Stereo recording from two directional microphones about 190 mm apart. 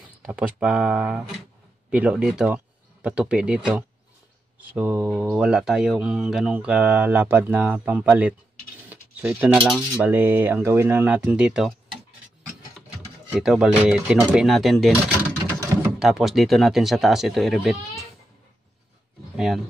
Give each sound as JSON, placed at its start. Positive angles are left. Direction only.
{"t": 0.2, "sound": "speech", "side_deg": -5}
{"t": 13.4, "sound": "speech", "side_deg": -5}
{"t": 16.0, "sound": "speech", "side_deg": 0}
{"t": 19.3, "sound": "speech", "side_deg": 0}